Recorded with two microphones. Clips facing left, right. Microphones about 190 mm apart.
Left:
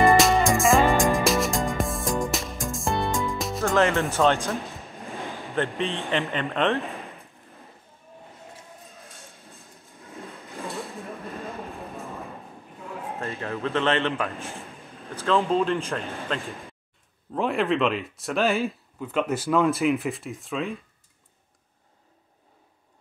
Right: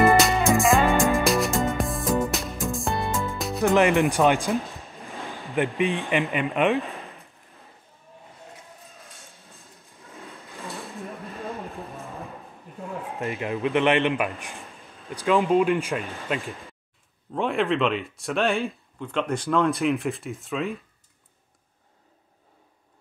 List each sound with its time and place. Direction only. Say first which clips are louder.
0.0 s music: left 1 dB; centre (ahead or behind)
3.6 s a man's voice: right 3 dB; 15° right (ahead or behind)
13.2 s a man's voice: right 4 dB; 15° right (ahead or behind)
16.1 s speech: right 1 dB; centre (ahead or behind)